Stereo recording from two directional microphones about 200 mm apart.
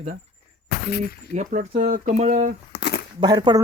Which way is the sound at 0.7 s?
50° left (ahead or behind).